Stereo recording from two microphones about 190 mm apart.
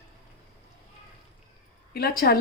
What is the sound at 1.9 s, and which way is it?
Speech, 55° left (ahead or behind).